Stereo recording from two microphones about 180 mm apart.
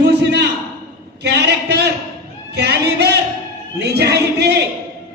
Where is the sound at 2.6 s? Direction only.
65° right (ahead or behind).